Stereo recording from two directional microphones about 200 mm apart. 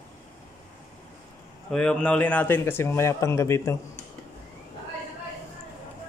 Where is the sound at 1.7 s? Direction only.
5° left (ahead or behind).